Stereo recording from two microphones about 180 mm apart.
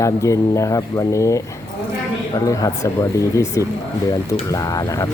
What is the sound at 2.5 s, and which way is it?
Speech, 20° left (ahead or behind).